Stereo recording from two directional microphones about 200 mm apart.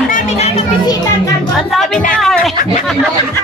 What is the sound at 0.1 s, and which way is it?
Music, 30° left (ahead or behind).